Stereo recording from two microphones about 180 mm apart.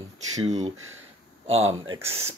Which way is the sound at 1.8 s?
15° right (ahead or behind).